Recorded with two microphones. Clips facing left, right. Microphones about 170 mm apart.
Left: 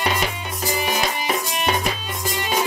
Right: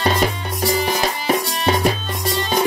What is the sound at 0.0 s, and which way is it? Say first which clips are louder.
Music: right 5 dB; 35° right (ahead or behind).